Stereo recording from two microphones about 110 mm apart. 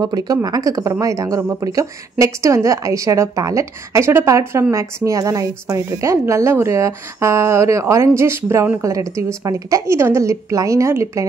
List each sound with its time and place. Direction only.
0.0 s speech: 35° right (ahead or behind)